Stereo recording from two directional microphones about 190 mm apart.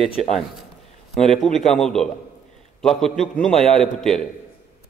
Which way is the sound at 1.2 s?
5° left (ahead or behind).